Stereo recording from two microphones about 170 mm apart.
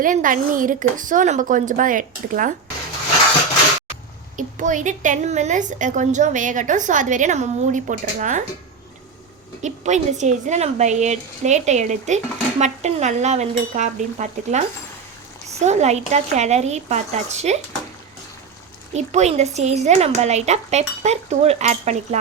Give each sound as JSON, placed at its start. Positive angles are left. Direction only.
{"t": 0.0, "sound": "speech", "side_deg": -50}
{"t": 4.4, "sound": "speech", "side_deg": -50}
{"t": 9.6, "sound": "speech", "side_deg": -45}
{"t": 18.9, "sound": "speech", "side_deg": -40}